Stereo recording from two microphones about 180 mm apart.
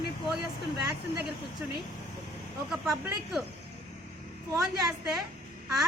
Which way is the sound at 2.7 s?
Centre (ahead or behind).